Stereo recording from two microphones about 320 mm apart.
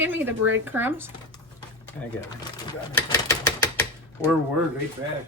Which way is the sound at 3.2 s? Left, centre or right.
Centre.